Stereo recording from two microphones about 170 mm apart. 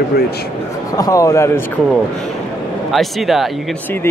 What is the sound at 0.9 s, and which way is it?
Speech, 20° left (ahead or behind).